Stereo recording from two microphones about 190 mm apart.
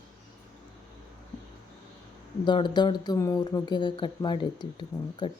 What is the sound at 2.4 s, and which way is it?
A woman's voice, 25° left (ahead or behind).